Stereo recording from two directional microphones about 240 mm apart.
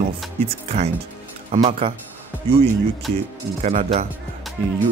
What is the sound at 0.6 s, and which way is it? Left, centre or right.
Speech, right.